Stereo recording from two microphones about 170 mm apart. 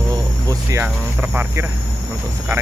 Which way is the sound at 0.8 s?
10° right (ahead or behind).